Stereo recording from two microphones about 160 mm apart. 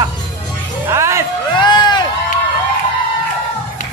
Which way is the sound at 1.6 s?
25° left (ahead or behind).